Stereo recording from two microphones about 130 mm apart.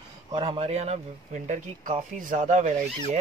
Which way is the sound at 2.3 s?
65° right (ahead or behind).